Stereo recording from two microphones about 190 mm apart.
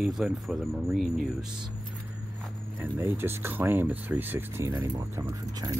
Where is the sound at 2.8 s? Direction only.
10° right (ahead or behind).